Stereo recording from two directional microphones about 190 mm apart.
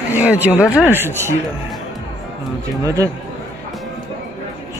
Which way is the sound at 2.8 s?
15° right (ahead or behind).